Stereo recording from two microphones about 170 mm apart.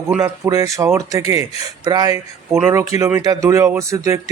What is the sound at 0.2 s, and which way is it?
Speech, 20° right (ahead or behind).